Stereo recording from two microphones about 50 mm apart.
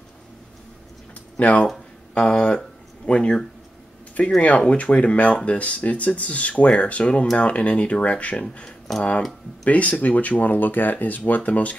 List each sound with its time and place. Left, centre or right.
1.4 s speech: left
2.1 s speech: centre